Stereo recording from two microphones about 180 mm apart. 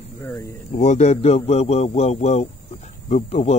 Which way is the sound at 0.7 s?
40° left (ahead or behind).